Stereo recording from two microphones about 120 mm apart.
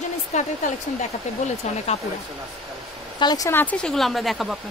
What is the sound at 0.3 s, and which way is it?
Speech, 75° left (ahead or behind).